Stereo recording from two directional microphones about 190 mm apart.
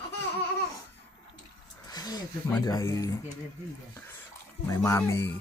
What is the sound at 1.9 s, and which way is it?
Speech, 20° left (ahead or behind).